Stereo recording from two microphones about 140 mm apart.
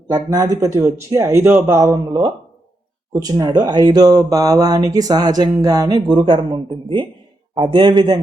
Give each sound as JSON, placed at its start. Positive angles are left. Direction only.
{"t": 0.1, "sound": "speech", "side_deg": -25}
{"t": 3.1, "sound": "a man's voice", "side_deg": -25}